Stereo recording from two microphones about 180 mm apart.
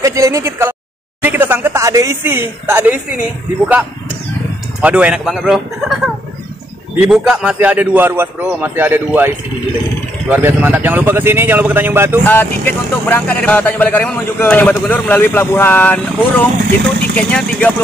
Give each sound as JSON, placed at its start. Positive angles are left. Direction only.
{"t": 0.0, "sound": "a sound", "side_deg": -15}
{"t": 1.2, "sound": "speech", "side_deg": -10}
{"t": 4.8, "sound": "a man's voice", "side_deg": -5}
{"t": 12.3, "sound": "speech", "side_deg": 10}